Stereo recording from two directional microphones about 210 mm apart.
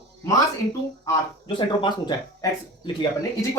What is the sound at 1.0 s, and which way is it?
Speech, 20° left (ahead or behind).